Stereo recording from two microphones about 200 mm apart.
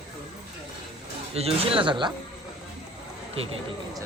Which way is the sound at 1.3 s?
30° right (ahead or behind).